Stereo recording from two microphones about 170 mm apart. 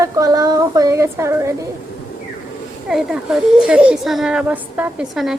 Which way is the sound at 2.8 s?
5° right (ahead or behind).